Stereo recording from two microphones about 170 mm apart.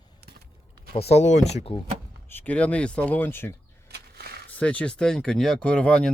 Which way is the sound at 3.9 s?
70° right (ahead or behind).